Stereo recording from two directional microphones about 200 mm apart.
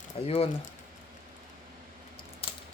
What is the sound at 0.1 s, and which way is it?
Speech, 30° left (ahead or behind).